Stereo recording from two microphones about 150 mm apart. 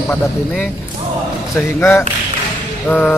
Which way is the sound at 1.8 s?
15° left (ahead or behind).